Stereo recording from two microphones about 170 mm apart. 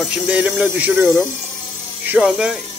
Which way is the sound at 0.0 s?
5° right (ahead or behind).